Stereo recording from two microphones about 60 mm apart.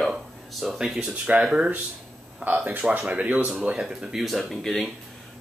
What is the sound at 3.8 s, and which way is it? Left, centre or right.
Speech, centre.